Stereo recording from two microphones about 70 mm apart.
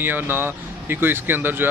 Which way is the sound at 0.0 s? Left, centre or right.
Right.